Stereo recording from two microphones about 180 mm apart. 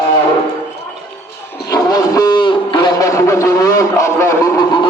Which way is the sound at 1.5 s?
20° left (ahead or behind).